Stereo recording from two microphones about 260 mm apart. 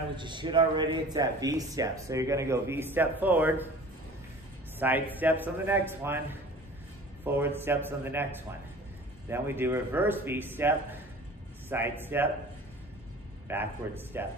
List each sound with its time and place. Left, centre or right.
0.1 s speech: centre
4.7 s speech: centre
7.2 s speech: centre
9.3 s speech: centre
13.5 s speech: centre